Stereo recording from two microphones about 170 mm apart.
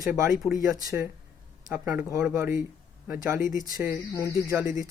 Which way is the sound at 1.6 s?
10° right (ahead or behind).